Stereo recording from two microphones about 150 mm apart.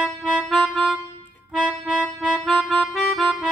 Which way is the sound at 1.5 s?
5° right (ahead or behind).